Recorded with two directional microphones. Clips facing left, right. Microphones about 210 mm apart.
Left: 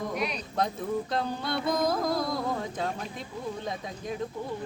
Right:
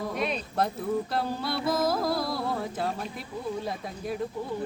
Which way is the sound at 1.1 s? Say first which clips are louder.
Even; 5° right (ahead or behind).